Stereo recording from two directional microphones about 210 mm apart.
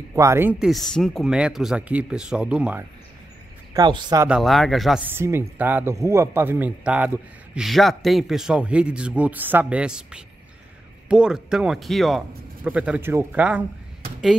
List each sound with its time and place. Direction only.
0.1 s a man's voice: 15° right (ahead or behind)
3.7 s speech: 20° right (ahead or behind)
4.3 s a man's voice: centre (ahead or behind)